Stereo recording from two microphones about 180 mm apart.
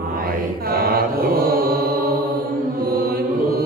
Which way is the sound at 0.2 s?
55° right (ahead or behind).